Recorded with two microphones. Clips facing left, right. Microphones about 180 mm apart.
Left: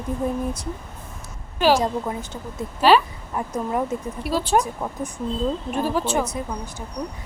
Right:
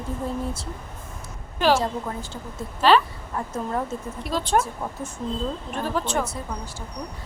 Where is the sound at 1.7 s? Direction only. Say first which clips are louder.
Left 2 dB; 15° left (ahead or behind).